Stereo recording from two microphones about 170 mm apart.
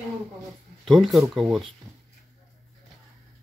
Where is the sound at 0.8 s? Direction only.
Centre (ahead or behind).